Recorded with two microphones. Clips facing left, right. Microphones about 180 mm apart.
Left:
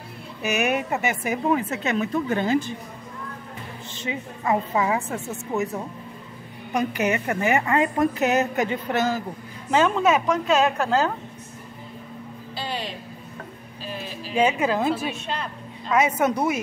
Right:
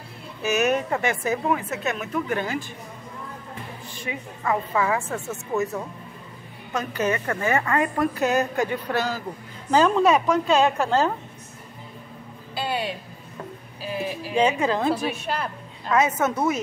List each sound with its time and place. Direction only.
0.4 s a woman's voice: 15° left (ahead or behind)
1.5 s a woman's voice: 30° left (ahead or behind)
3.9 s a woman's voice: 25° left (ahead or behind)
6.7 s a woman's voice: 15° left (ahead or behind)
9.7 s a woman's voice: centre (ahead or behind)
14.3 s a woman's voice: 10° left (ahead or behind)